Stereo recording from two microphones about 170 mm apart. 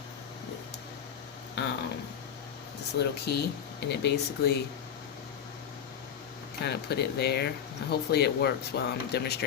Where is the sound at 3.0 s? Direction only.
75° left (ahead or behind).